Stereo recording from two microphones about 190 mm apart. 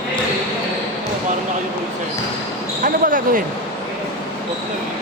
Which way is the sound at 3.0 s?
45° right (ahead or behind).